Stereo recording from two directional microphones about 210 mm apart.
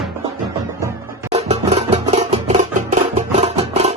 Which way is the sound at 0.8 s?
15° right (ahead or behind).